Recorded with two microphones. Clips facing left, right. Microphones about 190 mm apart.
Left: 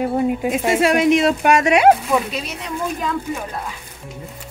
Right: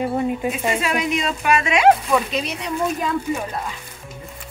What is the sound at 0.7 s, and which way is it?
Speech, 70° left (ahead or behind).